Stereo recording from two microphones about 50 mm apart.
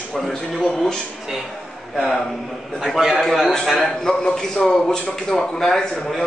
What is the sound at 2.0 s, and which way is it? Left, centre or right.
Speech, centre.